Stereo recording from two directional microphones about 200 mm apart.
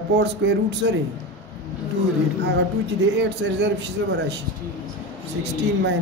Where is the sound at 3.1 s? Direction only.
60° right (ahead or behind).